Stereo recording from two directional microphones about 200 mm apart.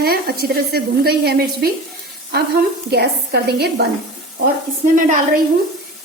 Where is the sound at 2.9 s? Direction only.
55° right (ahead or behind).